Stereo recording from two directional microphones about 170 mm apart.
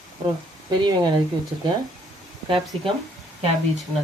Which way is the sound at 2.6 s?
Centre (ahead or behind).